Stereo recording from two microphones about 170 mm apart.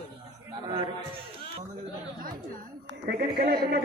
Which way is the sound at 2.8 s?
70° right (ahead or behind).